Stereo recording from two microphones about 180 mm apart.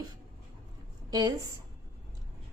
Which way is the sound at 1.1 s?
20° right (ahead or behind).